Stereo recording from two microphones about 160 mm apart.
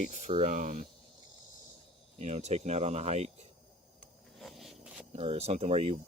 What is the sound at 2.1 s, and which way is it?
Speech, 45° right (ahead or behind).